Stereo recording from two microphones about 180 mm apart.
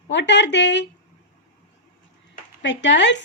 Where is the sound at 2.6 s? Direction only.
80° left.